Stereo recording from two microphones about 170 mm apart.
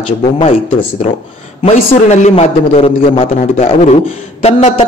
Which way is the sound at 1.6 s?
40° left (ahead or behind).